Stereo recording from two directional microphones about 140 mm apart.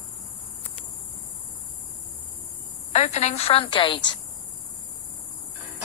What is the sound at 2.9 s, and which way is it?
A woman's voice, 55° left (ahead or behind).